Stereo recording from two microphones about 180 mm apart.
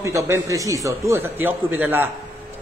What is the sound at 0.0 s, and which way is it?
A man's voice, 15° right (ahead or behind).